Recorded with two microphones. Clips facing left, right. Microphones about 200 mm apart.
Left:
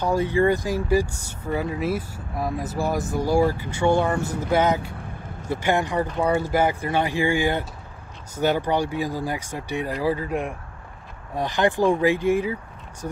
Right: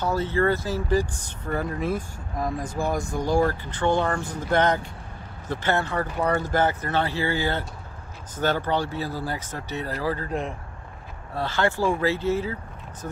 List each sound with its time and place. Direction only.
0.0 s speech: 15° left (ahead or behind)